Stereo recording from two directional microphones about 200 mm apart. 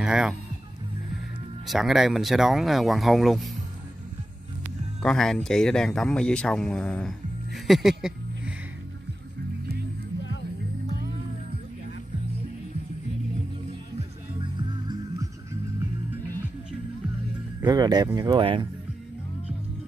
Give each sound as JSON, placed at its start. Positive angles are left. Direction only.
{"t": 0.0, "sound": "speech", "side_deg": -5}
{"t": 1.7, "sound": "speech", "side_deg": 0}
{"t": 5.0, "sound": "speech", "side_deg": 0}
{"t": 13.9, "sound": "music", "side_deg": -25}
{"t": 17.6, "sound": "speech", "side_deg": -20}